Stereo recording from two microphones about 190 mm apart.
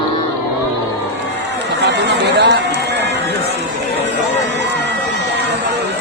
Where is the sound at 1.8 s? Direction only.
65° right (ahead or behind).